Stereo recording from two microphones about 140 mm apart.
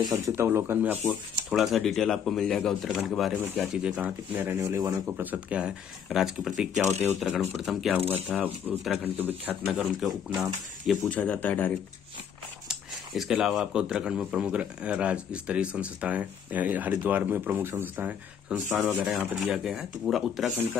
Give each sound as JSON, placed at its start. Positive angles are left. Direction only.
{"t": 0.1, "sound": "speech", "side_deg": -20}
{"t": 1.0, "sound": "speech", "side_deg": 0}
{"t": 8.4, "sound": "speech", "side_deg": -15}
{"t": 9.7, "sound": "speech", "side_deg": 0}
{"t": 11.0, "sound": "speech", "side_deg": 10}
{"t": 12.6, "sound": "speech", "side_deg": -5}